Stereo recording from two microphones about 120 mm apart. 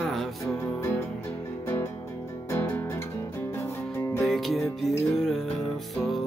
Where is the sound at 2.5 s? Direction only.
20° left (ahead or behind).